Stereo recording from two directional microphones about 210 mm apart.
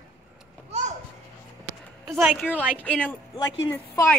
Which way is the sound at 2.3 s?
5° left (ahead or behind).